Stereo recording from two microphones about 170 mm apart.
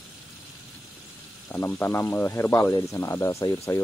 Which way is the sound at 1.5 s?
15° left (ahead or behind).